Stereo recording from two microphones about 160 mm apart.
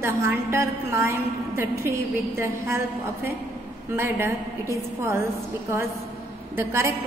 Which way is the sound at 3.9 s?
15° right (ahead or behind).